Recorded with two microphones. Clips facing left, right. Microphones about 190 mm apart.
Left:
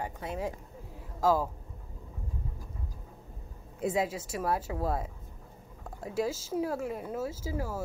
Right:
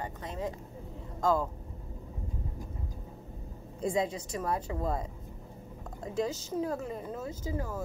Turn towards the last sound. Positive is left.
turn(degrees=5)  # may be behind; listen again after turning